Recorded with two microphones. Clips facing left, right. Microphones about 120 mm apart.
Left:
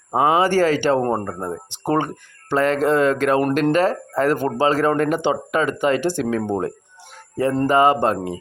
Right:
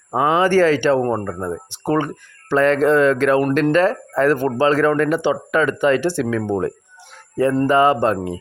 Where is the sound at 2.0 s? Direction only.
20° left (ahead or behind).